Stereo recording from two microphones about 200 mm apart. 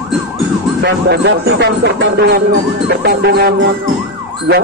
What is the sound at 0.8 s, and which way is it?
Speech, 55° right (ahead or behind).